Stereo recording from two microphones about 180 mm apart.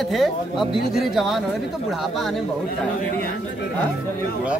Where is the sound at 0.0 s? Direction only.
Centre (ahead or behind).